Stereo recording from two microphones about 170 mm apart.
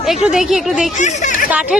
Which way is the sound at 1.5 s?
10° right (ahead or behind).